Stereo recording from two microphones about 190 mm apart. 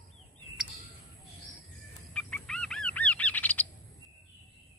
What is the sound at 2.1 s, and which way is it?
Bird, 5° left (ahead or behind).